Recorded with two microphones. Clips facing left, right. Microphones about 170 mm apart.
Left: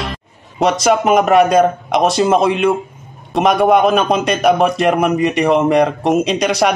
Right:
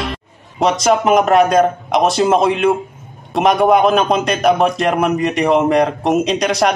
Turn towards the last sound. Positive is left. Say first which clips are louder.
# left 1 dB
turn(degrees=0)  # may be behind; listen again after turning